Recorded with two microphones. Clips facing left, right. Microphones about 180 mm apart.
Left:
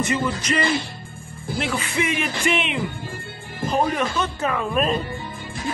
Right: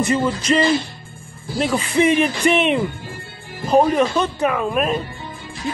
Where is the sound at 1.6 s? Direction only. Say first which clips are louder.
Right 8 dB; 35° right (ahead or behind).